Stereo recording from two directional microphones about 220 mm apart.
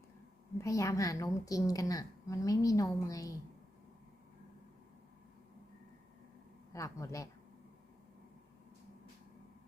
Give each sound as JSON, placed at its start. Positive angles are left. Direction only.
{"t": 0.6, "sound": "a woman's voice", "side_deg": 15}
{"t": 6.7, "sound": "a woman's voice", "side_deg": 15}